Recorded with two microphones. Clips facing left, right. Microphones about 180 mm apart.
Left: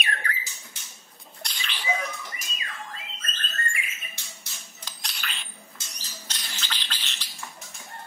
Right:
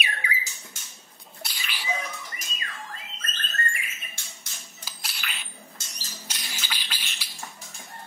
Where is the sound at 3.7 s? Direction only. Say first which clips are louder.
Left 1 dB; 50° right (ahead or behind).